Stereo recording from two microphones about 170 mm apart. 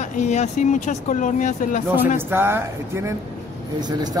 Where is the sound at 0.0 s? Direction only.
45° left (ahead or behind).